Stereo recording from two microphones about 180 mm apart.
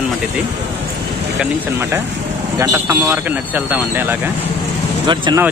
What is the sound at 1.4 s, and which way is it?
Speech, 15° right (ahead or behind).